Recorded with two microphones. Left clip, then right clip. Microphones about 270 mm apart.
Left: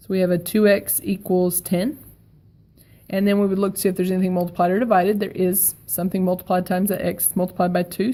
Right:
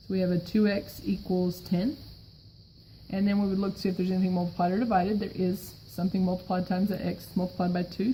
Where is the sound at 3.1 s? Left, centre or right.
Left.